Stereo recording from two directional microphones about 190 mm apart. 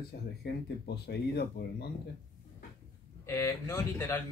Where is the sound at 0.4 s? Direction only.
60° left (ahead or behind).